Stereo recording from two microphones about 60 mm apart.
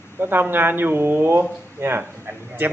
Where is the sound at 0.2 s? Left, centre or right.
Right.